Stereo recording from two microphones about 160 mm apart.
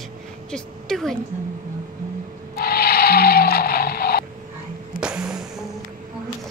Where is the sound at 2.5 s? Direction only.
70° left (ahead or behind).